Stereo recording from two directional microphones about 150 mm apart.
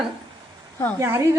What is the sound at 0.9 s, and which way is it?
Speech, 15° right (ahead or behind).